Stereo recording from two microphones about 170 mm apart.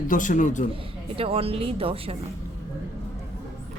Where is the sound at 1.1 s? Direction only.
35° right (ahead or behind).